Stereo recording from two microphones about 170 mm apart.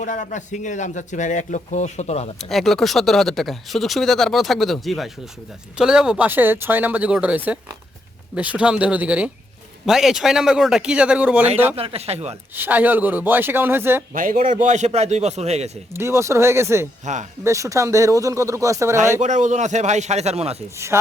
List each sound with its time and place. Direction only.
0.0 s a man's voice: 50° left (ahead or behind)
2.5 s speech: centre (ahead or behind)
11.8 s a man's voice: 35° right (ahead or behind)
12.5 s speech: 10° right (ahead or behind)
14.1 s a man's voice: 50° right (ahead or behind)
15.9 s speech: 15° right (ahead or behind)
17.1 s a man's voice: 45° right (ahead or behind)
17.4 s speech: 20° right (ahead or behind)
19.2 s a man's voice: 45° right (ahead or behind)
20.7 s speech: 15° right (ahead or behind)